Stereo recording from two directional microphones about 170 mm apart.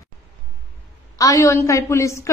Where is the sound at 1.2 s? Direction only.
20° left (ahead or behind).